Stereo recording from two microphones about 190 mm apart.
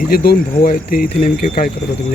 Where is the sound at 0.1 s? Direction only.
55° left (ahead or behind).